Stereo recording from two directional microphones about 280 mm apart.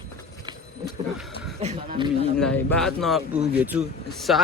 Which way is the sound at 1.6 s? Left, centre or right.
Right.